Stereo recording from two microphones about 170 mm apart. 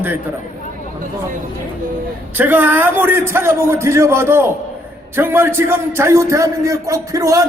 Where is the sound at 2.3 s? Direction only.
10° right (ahead or behind).